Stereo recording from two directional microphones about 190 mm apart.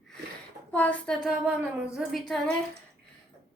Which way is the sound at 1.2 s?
5° right (ahead or behind).